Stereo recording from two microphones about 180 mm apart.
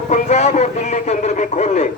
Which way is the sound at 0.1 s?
40° left (ahead or behind).